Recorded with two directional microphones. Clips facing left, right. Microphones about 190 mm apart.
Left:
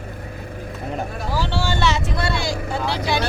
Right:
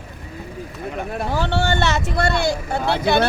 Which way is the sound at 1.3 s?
60° right (ahead or behind).